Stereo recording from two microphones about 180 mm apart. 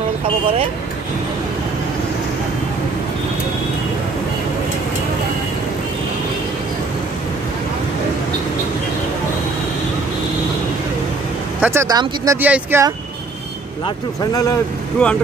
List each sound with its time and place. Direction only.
11.6 s speech: 15° right (ahead or behind)
13.8 s speech: 20° left (ahead or behind)
15.0 s speech: 5° left (ahead or behind)